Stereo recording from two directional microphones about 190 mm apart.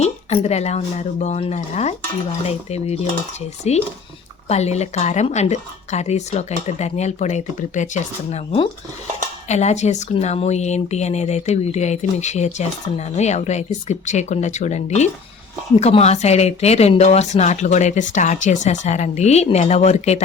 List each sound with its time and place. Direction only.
0.0 s speech: 35° left (ahead or behind)